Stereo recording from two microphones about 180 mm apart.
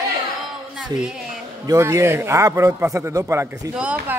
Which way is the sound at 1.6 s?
15° right (ahead or behind).